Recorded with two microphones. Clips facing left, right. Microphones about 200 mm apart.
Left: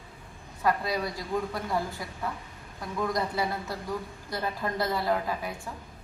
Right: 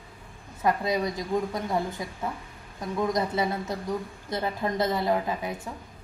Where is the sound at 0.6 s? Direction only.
20° right (ahead or behind).